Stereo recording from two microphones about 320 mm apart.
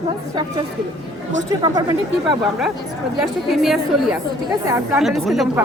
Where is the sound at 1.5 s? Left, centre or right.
Centre.